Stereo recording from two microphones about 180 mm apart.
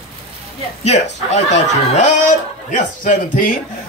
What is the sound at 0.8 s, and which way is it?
Speech, 40° left (ahead or behind).